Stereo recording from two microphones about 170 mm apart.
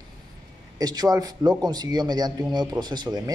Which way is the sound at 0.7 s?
25° right (ahead or behind).